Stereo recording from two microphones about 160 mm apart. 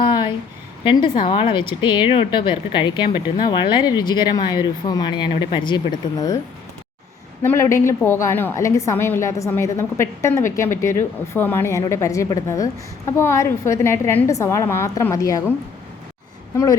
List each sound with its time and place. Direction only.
0.0 s a sound: 30° left (ahead or behind)
1.2 s speech: 35° left (ahead or behind)
7.4 s a woman's voice: 20° left (ahead or behind)